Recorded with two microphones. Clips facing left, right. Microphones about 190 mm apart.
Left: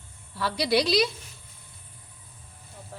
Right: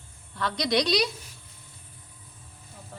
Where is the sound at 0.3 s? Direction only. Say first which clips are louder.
Left 1 dB; 5° left (ahead or behind).